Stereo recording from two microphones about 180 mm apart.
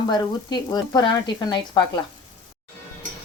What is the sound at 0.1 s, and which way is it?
Speech, 25° left (ahead or behind).